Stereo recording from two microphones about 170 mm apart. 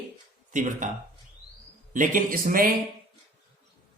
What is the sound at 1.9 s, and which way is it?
Speech, 55° right (ahead or behind).